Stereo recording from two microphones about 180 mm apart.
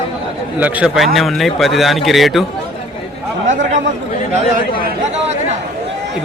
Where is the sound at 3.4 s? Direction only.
40° right (ahead or behind).